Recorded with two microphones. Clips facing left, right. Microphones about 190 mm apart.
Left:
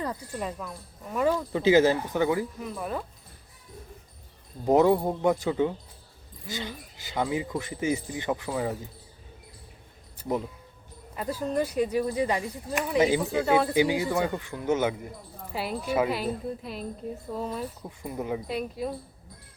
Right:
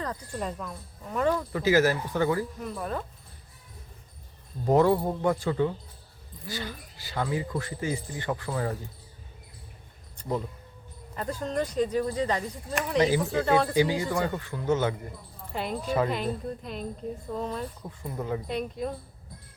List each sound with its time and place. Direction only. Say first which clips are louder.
0.0 s speech: left 1 dB; 10° left (ahead or behind)
1.5 s speech: left 4 dB; 25° left (ahead or behind)
2.6 s a woman's voice: even; 5° left (ahead or behind)
4.6 s speech: left 1 dB; 15° left (ahead or behind)
11.1 s speech: left 2 dB; 5° left (ahead or behind)
13.1 s a woman's voice: even; 15° left (ahead or behind)
18.4 s a woman's voice: even; 5° left (ahead or behind)